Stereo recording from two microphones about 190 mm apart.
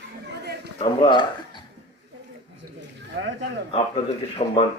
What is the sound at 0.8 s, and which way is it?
Speech, 25° left (ahead or behind).